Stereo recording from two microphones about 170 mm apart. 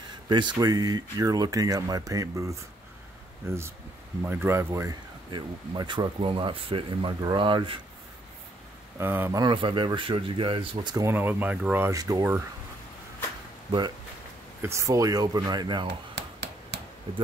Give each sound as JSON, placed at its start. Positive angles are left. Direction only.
{"t": 0.3, "sound": "speech", "side_deg": -25}
{"t": 5.3, "sound": "speech", "side_deg": -25}
{"t": 9.0, "sound": "speech", "side_deg": -15}
{"t": 9.4, "sound": "speech", "side_deg": -30}
{"t": 11.1, "sound": "speech", "side_deg": -10}
{"t": 13.7, "sound": "speech", "side_deg": -25}
{"t": 16.2, "sound": "a sound", "side_deg": -80}